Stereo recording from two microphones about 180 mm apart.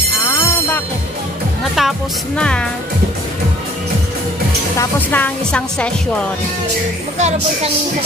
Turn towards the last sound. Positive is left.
turn(degrees=-35)  # may be behind; listen again after turning